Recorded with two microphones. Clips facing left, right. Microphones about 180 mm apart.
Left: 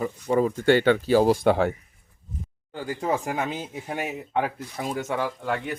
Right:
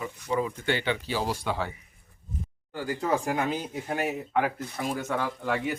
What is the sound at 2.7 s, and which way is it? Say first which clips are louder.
Speech: left 2 dB; 25° left (ahead or behind).